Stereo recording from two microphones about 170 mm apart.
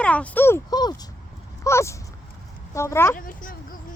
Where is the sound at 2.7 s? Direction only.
15° left (ahead or behind).